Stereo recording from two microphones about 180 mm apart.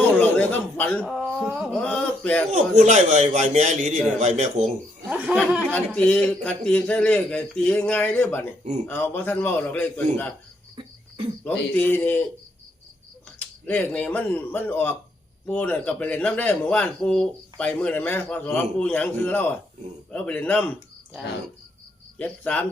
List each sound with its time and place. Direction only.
0.2 s speech: 10° left (ahead or behind)
1.0 s a sound: centre (ahead or behind)
2.5 s a man's voice: 40° right (ahead or behind)
5.0 s a sound: 5° right (ahead or behind)
5.7 s speech: 5° left (ahead or behind)
11.4 s speech: 10° left (ahead or behind)
13.7 s speech: 5° left (ahead or behind)
22.2 s speech: 5° left (ahead or behind)